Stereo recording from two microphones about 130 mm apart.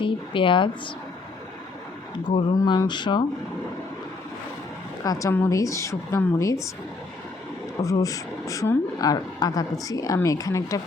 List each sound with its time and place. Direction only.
0.0 s speech: 40° left (ahead or behind)
2.3 s speech: 35° left (ahead or behind)
5.0 s speech: 25° left (ahead or behind)
7.8 s speech: 25° left (ahead or behind)